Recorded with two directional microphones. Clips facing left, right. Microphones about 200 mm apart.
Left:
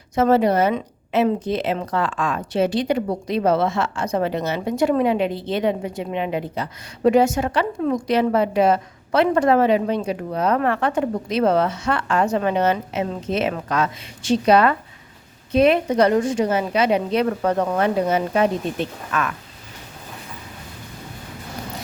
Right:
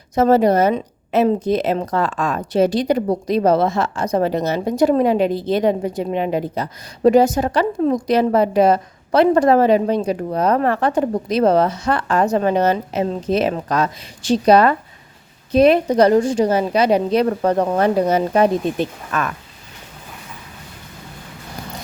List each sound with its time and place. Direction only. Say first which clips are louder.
0.2 s a woman's voice: right 3 dB; 40° right (ahead or behind)